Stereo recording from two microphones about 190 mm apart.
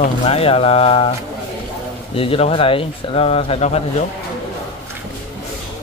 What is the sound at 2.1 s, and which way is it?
Speech, 30° left (ahead or behind).